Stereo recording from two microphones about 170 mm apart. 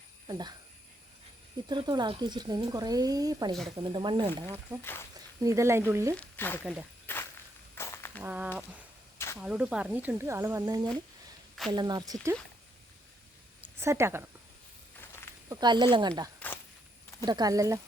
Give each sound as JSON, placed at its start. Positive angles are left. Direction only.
{"t": 0.3, "sound": "speech", "side_deg": -25}
{"t": 1.6, "sound": "speech", "side_deg": -25}
{"t": 4.8, "sound": "speech", "side_deg": 15}
{"t": 5.4, "sound": "speech", "side_deg": -20}
{"t": 6.1, "sound": "speech", "side_deg": 10}
{"t": 6.6, "sound": "speech", "side_deg": -10}
{"t": 7.1, "sound": "walk", "side_deg": 10}
{"t": 7.8, "sound": "a sound", "side_deg": 15}
{"t": 8.2, "sound": "speech", "side_deg": -10}
{"t": 9.1, "sound": "a sound", "side_deg": 15}
{"t": 9.4, "sound": "speech", "side_deg": -5}
{"t": 13.6, "sound": "a woman's voice", "side_deg": -15}
{"t": 15.4, "sound": "speech", "side_deg": -25}